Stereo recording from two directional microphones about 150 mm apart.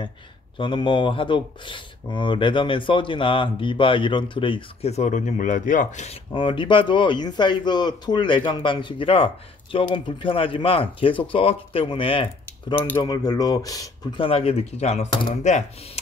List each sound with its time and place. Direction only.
0.6 s speech: 30° left (ahead or behind); by 6.1 s 50° left (ahead or behind)
6.3 s speech: 35° left (ahead or behind)
12.7 s speech: 15° left (ahead or behind)
13.0 s speech: 25° left (ahead or behind)
14.2 s speech: 40° left (ahead or behind)
15.0 s speech: 35° left (ahead or behind)